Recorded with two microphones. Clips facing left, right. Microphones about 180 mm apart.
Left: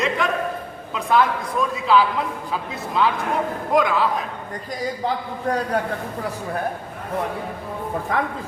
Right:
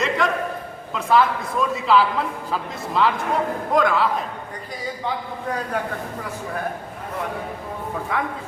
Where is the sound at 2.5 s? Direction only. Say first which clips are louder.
Right 1 dB; centre (ahead or behind).